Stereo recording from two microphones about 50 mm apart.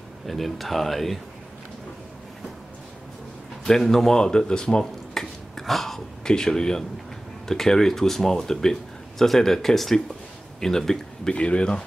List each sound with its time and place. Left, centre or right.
0.3 s speech: centre
3.6 s speech: centre
5.6 s speech: centre